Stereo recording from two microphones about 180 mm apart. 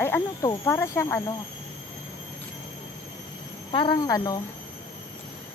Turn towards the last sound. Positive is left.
turn(degrees=20)  # may be behind; listen again after turning